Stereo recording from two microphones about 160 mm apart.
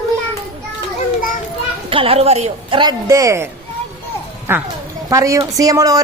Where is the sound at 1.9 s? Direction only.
35° right (ahead or behind).